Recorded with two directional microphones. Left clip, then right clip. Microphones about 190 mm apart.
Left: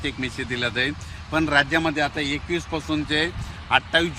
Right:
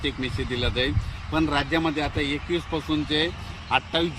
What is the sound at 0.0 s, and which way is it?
A man's voice, 5° left (ahead or behind).